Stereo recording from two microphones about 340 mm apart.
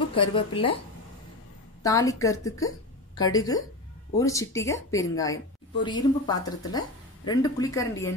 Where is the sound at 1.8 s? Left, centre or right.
Centre.